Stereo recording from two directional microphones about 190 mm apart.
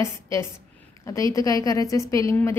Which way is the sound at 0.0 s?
15° left (ahead or behind).